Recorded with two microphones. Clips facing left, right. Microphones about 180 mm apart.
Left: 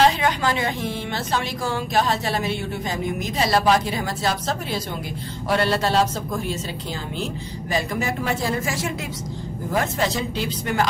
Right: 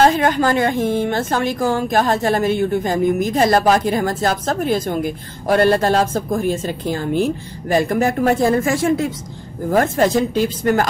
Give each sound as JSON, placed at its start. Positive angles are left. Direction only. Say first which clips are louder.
{"t": 0.0, "sound": "a woman's voice", "louder": "right 5 dB", "side_deg": -50}